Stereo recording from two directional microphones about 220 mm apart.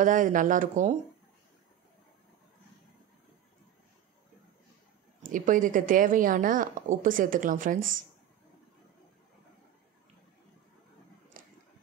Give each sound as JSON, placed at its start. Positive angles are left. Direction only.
{"t": 0.0, "sound": "a woman's voice", "side_deg": -35}
{"t": 5.2, "sound": "a woman's voice", "side_deg": -35}
{"t": 11.4, "sound": "a sound", "side_deg": -40}